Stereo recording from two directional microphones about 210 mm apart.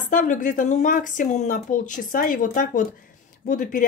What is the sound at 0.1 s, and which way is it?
Speech, 40° left (ahead or behind).